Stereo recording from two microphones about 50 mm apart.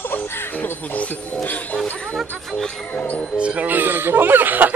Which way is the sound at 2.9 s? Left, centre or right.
Left.